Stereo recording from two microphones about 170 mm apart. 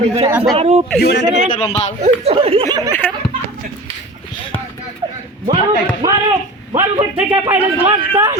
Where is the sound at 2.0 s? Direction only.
35° right (ahead or behind).